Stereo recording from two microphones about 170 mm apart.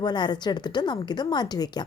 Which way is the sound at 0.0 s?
25° left (ahead or behind).